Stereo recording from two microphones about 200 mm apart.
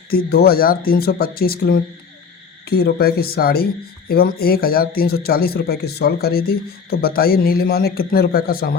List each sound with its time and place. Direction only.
0.1 s speech: 50° left (ahead or behind)